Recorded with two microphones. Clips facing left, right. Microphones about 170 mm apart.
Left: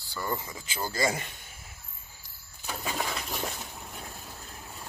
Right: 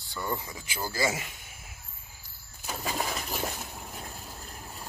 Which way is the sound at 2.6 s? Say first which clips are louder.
Right 1 dB; centre (ahead or behind).